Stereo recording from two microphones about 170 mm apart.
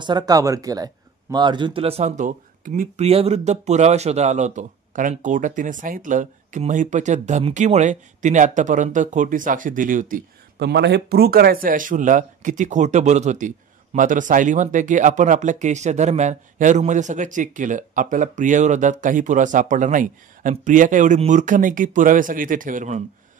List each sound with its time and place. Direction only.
0.0 s speech: 25° right (ahead or behind); by 3.1 s 50° right (ahead or behind)
3.1 s speech: 35° right (ahead or behind); by 10.2 s 50° right (ahead or behind)
10.6 s speech: 85° right; by 23.0 s 45° right (ahead or behind)